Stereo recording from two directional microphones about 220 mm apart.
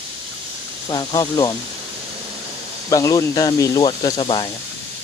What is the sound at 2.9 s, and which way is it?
Speech, 15° left (ahead or behind).